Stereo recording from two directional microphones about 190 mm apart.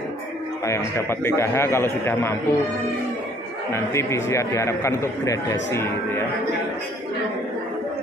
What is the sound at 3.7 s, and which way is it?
A man's voice, 15° left (ahead or behind).